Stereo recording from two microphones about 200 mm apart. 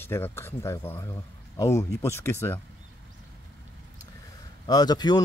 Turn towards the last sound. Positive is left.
turn(degrees=20)  # may be behind; listen again after turning